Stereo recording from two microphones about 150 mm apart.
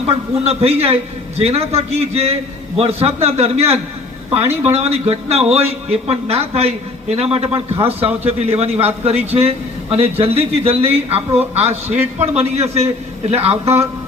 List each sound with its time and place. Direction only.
0.3 s a man's voice: 45° right (ahead or behind)